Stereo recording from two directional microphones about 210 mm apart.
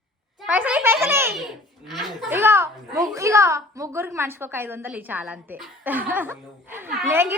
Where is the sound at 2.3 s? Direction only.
10° right (ahead or behind).